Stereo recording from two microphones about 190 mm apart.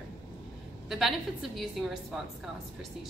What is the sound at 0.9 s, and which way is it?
A woman's voice, centre (ahead or behind).